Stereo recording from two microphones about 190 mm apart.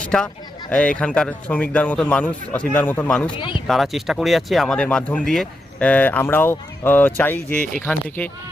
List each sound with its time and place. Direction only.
0.0 s speech: 5° left (ahead or behind)
3.2 s speech: 25° left (ahead or behind)
3.7 s speech: centre (ahead or behind)